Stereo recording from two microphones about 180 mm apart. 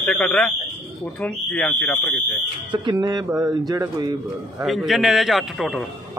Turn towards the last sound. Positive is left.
turn(degrees=0)  # may be behind; listen again after turning